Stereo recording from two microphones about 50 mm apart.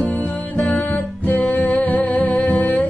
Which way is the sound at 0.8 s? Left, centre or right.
Left.